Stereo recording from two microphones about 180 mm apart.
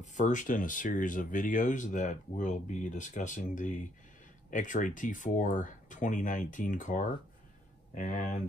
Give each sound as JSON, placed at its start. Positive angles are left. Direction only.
{"t": 0.0, "sound": "speech", "side_deg": 45}